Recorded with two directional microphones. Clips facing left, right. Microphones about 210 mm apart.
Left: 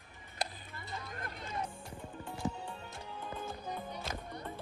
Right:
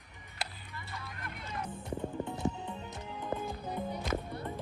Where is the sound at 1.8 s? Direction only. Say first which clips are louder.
Right 9 dB; 20° right (ahead or behind).